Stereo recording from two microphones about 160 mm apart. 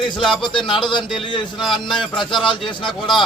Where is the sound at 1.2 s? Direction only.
30° left (ahead or behind).